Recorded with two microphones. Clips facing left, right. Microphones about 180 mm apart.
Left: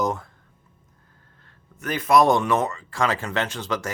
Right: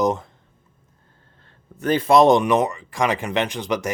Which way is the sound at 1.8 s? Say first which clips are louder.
Right 4 dB; 30° right (ahead or behind).